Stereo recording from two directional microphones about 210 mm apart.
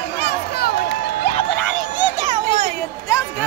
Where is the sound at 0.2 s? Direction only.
50° left (ahead or behind).